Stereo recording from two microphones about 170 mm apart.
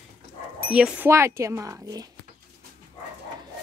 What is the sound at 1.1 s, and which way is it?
A woman's voice, 15° right (ahead or behind).